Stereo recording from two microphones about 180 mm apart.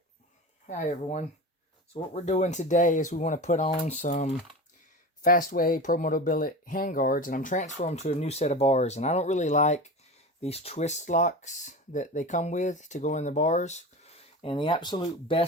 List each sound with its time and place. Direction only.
0.7 s speech: 40° left (ahead or behind)